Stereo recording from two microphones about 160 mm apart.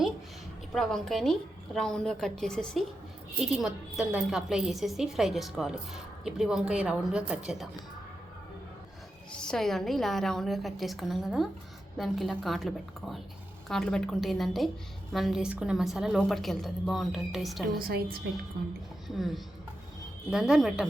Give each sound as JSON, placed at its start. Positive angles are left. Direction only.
{"t": 0.7, "sound": "a woman's voice", "side_deg": 0}
{"t": 9.3, "sound": "a woman's voice", "side_deg": 5}
{"t": 17.7, "sound": "a woman's voice", "side_deg": -70}
{"t": 19.0, "sound": "a woman's voice", "side_deg": 0}